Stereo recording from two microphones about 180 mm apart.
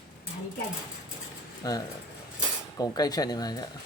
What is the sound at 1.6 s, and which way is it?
Speech, 20° left (ahead or behind).